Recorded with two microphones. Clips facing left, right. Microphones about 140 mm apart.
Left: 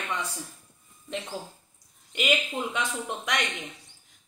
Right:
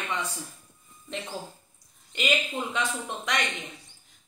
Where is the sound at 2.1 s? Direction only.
10° left (ahead or behind).